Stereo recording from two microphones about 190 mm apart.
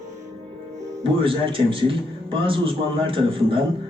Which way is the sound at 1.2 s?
30° right (ahead or behind).